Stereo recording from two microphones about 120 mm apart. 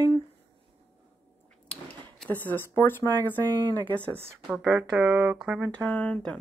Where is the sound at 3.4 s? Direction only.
35° right (ahead or behind).